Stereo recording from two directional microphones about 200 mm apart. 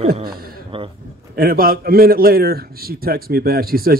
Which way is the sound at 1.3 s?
45° right (ahead or behind).